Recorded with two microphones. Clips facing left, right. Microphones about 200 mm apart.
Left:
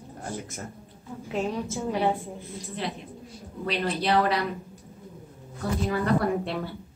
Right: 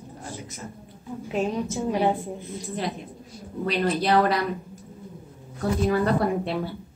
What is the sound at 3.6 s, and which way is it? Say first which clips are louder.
Speech: right 3 dB; 45° right (ahead or behind).